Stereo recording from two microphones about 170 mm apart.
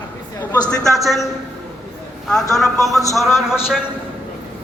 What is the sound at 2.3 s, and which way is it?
A man's voice, centre (ahead or behind).